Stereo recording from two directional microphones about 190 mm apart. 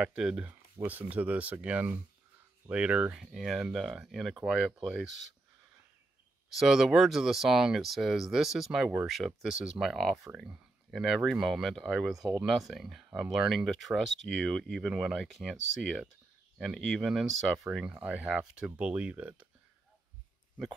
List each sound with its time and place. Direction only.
0.0 s speech: 5° right (ahead or behind)
6.5 s speech: centre (ahead or behind)
15.6 s speech: 75° right (ahead or behind)
16.5 s speech: centre (ahead or behind)